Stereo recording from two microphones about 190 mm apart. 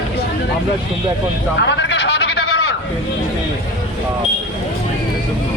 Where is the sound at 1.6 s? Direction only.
70° left (ahead or behind).